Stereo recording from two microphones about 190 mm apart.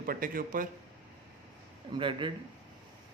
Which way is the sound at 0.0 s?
45° right (ahead or behind).